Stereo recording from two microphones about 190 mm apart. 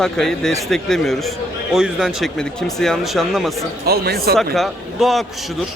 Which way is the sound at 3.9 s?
55° right (ahead or behind).